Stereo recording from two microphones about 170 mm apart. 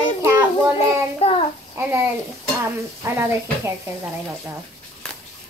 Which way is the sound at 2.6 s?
15° right (ahead or behind).